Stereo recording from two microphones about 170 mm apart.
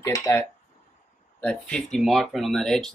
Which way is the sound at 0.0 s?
20° left (ahead or behind).